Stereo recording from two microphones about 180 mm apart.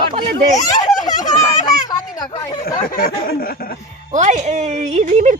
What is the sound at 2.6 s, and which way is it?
Speech, 55° left (ahead or behind).